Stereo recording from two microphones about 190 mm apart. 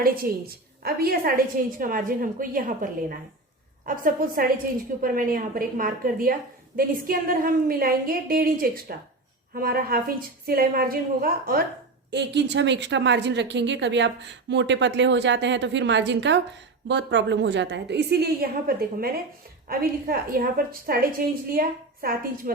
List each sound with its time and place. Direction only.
0.0 s a woman's voice: 50° right (ahead or behind)
12.1 s a woman's voice: 65° right (ahead or behind); by 22.5 s 50° right (ahead or behind)